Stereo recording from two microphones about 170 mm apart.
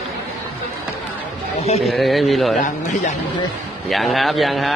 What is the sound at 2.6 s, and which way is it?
Speech, 45° left (ahead or behind).